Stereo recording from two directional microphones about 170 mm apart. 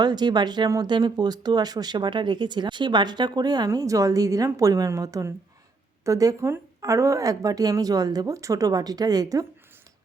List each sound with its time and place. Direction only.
0.0 s speech: 25° right (ahead or behind)